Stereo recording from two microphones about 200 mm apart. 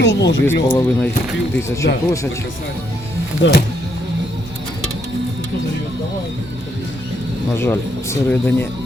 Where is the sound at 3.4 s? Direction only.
65° left (ahead or behind).